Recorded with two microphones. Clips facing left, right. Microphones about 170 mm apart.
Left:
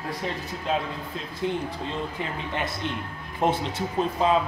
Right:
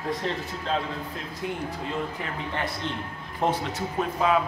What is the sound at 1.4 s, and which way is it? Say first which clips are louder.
Speech: left 3 dB; 25° left (ahead or behind).